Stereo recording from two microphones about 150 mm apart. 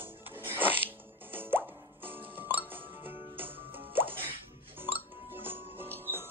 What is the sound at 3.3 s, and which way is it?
Music, 15° right (ahead or behind).